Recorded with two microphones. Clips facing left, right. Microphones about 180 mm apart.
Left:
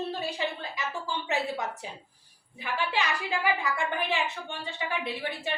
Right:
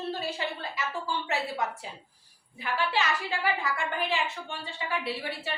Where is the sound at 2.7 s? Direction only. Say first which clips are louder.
Right 1 dB; 15° left (ahead or behind).